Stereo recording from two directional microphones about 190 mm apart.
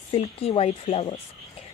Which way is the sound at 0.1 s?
30° left (ahead or behind).